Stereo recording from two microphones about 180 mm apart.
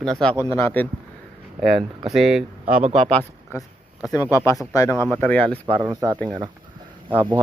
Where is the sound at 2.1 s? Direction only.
5° right (ahead or behind).